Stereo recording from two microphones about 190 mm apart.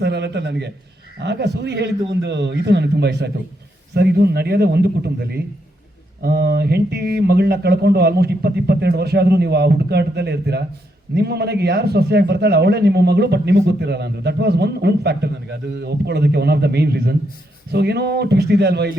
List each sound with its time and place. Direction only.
0.0 s a man's voice: 65° right (ahead or behind)